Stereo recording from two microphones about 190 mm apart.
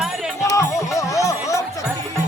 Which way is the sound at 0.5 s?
15° left (ahead or behind).